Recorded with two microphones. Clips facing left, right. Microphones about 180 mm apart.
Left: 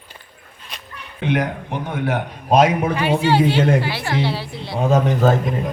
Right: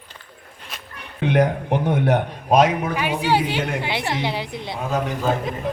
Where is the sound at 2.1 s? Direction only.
Centre (ahead or behind).